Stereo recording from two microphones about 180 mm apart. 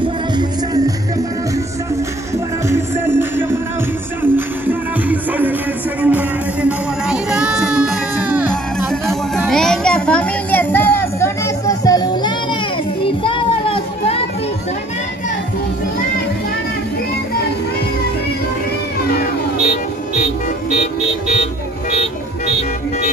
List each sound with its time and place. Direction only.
0.0 s music: 20° right (ahead or behind)
2.3 s music: 15° right (ahead or behind); by 12.4 s 25° left (ahead or behind)
13.0 s child singing: 30° left (ahead or behind)